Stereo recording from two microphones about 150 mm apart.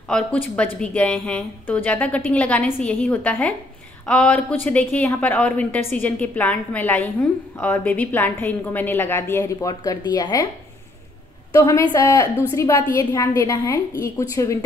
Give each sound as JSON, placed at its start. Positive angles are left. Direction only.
{"t": 0.1, "sound": "a woman's voice", "side_deg": 10}
{"t": 11.5, "sound": "a woman's voice", "side_deg": 25}